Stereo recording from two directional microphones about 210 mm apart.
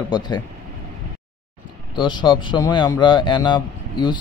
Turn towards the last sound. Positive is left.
turn(degrees=20)  # may be behind; listen again after turning